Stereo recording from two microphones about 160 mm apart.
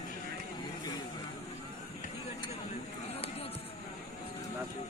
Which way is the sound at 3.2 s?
40° left (ahead or behind).